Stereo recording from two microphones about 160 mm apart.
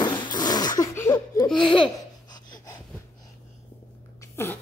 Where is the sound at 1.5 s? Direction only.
30° left (ahead or behind).